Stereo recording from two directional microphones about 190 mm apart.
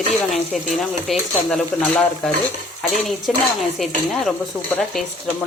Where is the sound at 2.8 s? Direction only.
Centre (ahead or behind).